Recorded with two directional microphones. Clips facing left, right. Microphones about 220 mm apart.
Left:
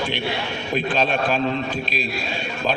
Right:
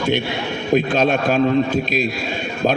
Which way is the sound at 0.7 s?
45° right (ahead or behind).